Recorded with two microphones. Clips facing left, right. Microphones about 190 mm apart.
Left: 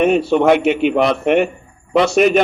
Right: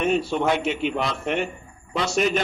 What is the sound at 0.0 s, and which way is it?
A man's voice, 65° left (ahead or behind).